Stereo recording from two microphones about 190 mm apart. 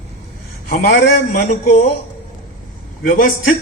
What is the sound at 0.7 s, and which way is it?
Speech, 60° left (ahead or behind).